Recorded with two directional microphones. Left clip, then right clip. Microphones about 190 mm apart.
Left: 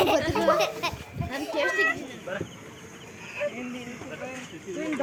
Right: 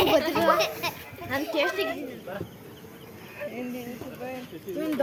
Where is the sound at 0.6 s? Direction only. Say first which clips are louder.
Left 1 dB; 45° left (ahead or behind).